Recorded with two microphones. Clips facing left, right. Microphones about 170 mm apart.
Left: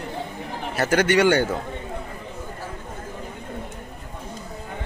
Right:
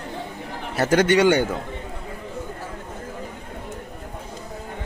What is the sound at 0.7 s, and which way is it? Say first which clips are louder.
Speech: right 2 dB; 20° right (ahead or behind).